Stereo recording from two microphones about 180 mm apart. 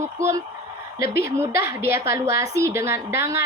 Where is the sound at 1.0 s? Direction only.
60° left (ahead or behind).